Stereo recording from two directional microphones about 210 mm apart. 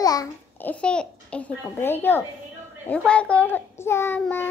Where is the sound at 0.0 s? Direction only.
15° left (ahead or behind).